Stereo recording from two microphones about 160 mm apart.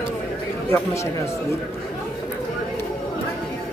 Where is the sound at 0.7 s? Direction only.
20° left (ahead or behind).